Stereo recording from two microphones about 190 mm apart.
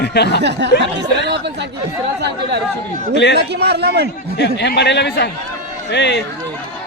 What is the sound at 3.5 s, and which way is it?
Speech, 60° right (ahead or behind).